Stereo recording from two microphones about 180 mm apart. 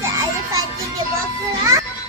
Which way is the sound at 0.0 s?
20° right (ahead or behind).